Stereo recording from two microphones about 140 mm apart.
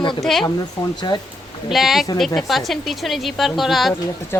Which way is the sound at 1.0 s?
30° left (ahead or behind).